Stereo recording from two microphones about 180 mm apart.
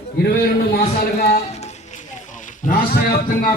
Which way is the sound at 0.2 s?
60° left (ahead or behind).